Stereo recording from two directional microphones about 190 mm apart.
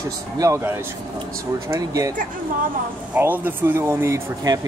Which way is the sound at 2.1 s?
45° right (ahead or behind).